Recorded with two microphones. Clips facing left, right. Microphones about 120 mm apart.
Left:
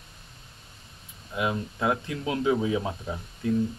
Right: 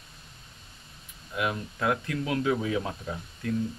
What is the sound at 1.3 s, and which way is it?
Speech, 20° left (ahead or behind).